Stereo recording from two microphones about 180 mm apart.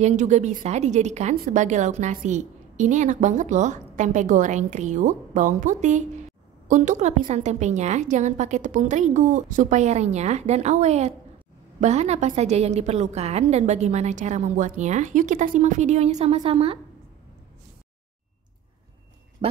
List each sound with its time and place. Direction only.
0.0 s a woman's voice: 40° right (ahead or behind)
19.4 s speech: 30° right (ahead or behind)